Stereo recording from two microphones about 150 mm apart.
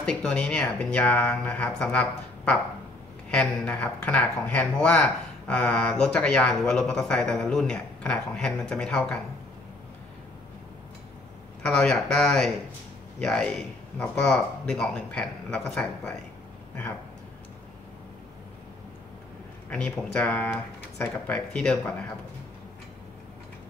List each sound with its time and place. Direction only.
0.0 s speech: 5° left (ahead or behind)
11.6 s a man's voice: 5° left (ahead or behind)
19.7 s speech: 5° left (ahead or behind)